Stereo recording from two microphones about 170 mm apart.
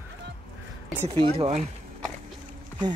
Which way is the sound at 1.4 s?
35° right (ahead or behind).